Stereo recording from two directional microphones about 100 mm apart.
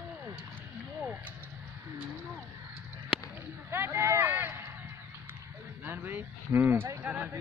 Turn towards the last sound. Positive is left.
turn(degrees=-15)  # may be behind; listen again after turning